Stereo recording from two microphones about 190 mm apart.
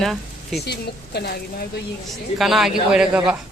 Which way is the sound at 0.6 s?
60° left (ahead or behind).